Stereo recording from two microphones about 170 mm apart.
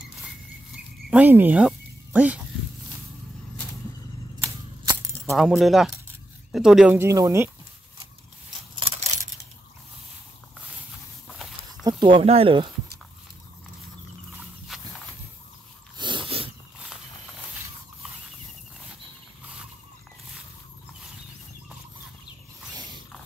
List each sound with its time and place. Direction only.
1.1 s speech: 10° right (ahead or behind)
5.3 s speech: centre (ahead or behind)
7.0 s speech: 20° right (ahead or behind)
8.7 s coin: 40° right (ahead or behind)
11.3 s a sound: centre (ahead or behind)
11.8 s speech: 25° right (ahead or behind)
16.0 s a sound: 30° right (ahead or behind)